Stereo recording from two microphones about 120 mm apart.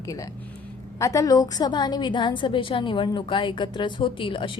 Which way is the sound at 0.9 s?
25° left (ahead or behind).